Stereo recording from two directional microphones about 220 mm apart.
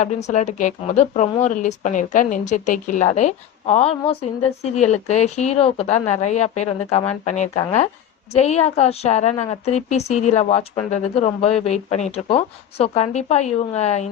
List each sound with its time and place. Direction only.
0.0 s a woman's voice: 30° left (ahead or behind)